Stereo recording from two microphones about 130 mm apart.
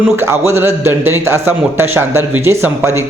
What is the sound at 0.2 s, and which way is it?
A man's voice, 20° right (ahead or behind).